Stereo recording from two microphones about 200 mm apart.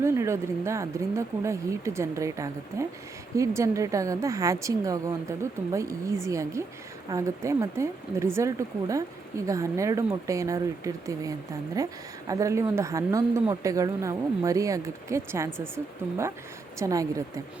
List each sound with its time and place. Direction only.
0.0 s speech: 15° right (ahead or behind)